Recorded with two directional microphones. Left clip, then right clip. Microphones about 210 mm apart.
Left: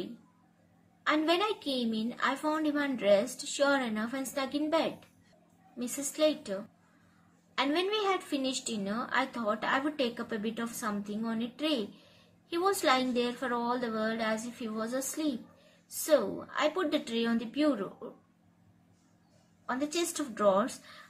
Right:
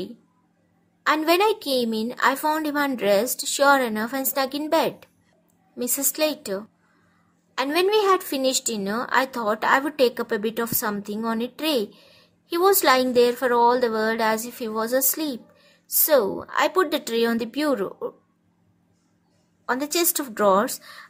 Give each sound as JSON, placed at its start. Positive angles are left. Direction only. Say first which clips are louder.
{"t": 1.0, "sound": "a woman's voice", "louder": "right 9 dB", "side_deg": -55}
{"t": 19.6, "sound": "a woman's voice", "louder": "right 9 dB", "side_deg": -55}